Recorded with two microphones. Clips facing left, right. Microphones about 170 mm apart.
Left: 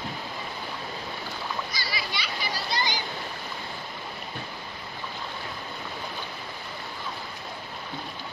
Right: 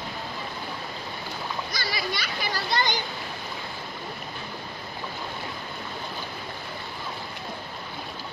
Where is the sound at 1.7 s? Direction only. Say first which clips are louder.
Right 3 dB; 50° right (ahead or behind).